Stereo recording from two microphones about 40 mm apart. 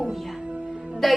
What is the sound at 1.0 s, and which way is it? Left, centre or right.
Music, centre.